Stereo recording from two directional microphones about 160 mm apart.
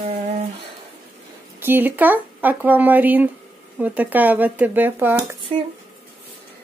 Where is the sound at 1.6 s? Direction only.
10° right (ahead or behind).